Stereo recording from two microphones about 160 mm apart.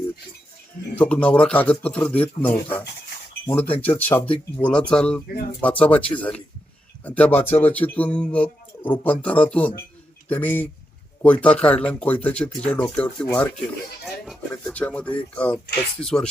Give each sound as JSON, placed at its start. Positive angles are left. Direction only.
{"t": 0.9, "sound": "speech", "side_deg": 10}